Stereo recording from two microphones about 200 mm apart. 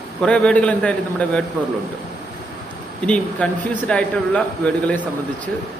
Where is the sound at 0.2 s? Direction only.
5° left (ahead or behind).